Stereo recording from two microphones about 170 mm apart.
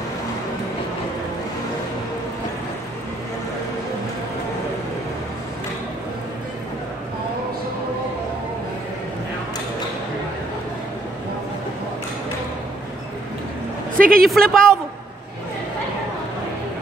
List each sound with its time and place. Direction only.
13.9 s vehicle: 55° right (ahead or behind)
14.3 s a woman's voice: 5° left (ahead or behind)